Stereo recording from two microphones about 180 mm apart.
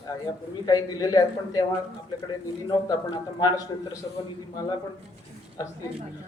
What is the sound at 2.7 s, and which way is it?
Speech, 25° left (ahead or behind).